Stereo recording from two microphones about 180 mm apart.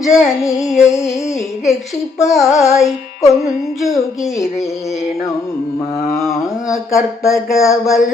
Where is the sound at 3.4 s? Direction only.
Centre (ahead or behind).